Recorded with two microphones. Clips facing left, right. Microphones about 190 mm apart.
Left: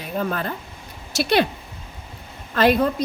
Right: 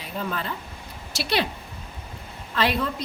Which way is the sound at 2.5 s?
45° left (ahead or behind).